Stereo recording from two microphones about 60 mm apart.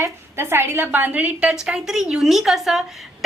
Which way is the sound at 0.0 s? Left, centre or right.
Right.